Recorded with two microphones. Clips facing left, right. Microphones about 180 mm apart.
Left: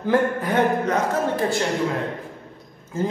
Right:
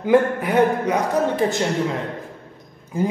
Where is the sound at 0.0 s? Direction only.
10° right (ahead or behind).